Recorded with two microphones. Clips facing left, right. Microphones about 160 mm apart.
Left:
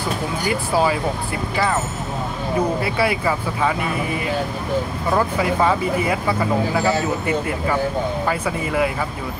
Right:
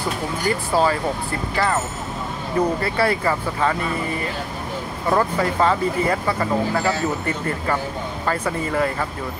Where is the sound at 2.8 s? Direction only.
5° left (ahead or behind).